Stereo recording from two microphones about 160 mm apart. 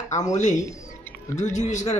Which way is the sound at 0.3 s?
50° left (ahead or behind).